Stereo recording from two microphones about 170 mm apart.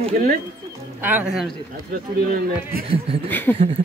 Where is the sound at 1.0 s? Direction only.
5° right (ahead or behind).